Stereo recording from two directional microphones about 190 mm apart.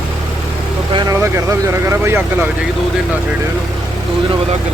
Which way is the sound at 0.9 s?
15° right (ahead or behind).